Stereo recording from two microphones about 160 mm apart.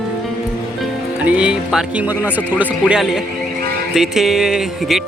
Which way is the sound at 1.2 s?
10° right (ahead or behind).